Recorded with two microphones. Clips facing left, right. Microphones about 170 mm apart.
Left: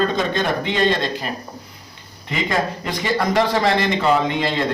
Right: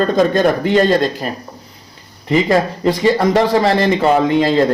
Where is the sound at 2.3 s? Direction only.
35° right (ahead or behind).